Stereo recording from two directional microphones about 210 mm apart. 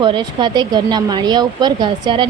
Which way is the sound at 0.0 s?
20° right (ahead or behind).